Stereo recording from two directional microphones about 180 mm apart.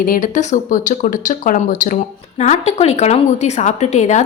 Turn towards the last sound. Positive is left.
turn(degrees=40)  # may be behind; listen again after turning